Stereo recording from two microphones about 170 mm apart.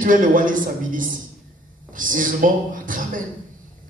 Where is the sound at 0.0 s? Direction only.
50° right (ahead or behind).